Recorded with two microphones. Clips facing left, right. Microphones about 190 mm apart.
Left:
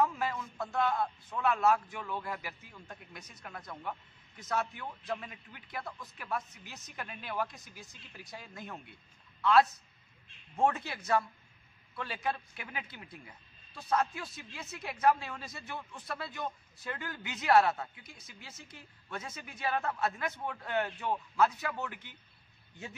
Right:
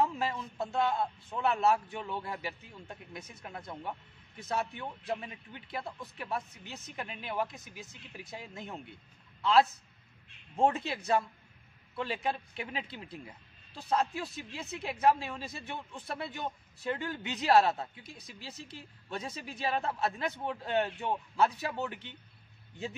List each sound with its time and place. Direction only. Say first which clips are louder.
0.0 s a man's voice: even; 25° right (ahead or behind)